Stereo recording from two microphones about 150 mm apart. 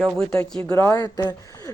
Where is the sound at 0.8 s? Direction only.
25° left (ahead or behind).